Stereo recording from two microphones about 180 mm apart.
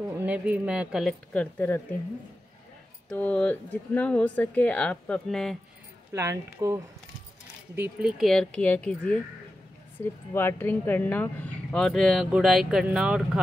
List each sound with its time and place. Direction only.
0.2 s speech: 10° right (ahead or behind)
1.3 s speech: 10° left (ahead or behind)
3.1 s speech: 5° left (ahead or behind)
6.1 s speech: 15° right (ahead or behind)
8.2 s speech: centre (ahead or behind)
10.3 s speech: 10° left (ahead or behind); by 13.4 s 5° right (ahead or behind)